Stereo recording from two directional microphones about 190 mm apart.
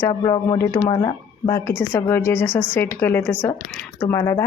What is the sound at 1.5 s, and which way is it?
Speech, 15° left (ahead or behind).